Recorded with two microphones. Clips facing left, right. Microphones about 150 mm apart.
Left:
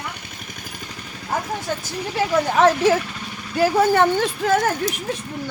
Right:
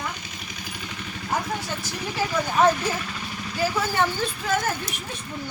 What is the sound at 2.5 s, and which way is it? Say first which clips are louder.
Speech: left 4 dB; 85° left.